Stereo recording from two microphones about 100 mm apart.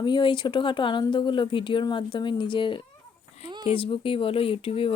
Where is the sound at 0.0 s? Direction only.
50° left (ahead or behind).